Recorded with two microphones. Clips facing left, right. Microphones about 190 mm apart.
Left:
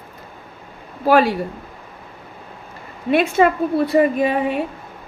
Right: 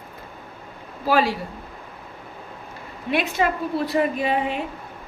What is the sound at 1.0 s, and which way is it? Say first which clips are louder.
Speech: left 5 dB; 55° left (ahead or behind).